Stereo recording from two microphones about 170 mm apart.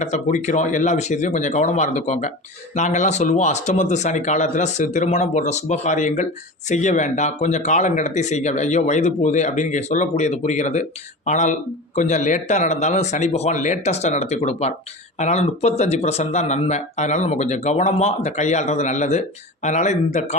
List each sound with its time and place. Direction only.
0.0 s speech: 45° left (ahead or behind)